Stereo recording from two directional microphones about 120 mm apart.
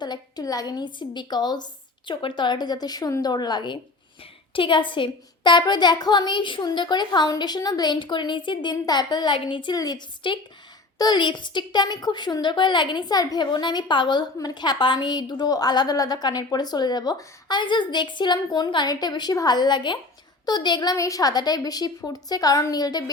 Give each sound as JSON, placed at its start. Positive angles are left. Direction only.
{"t": 0.0, "sound": "a woman's voice", "side_deg": 35}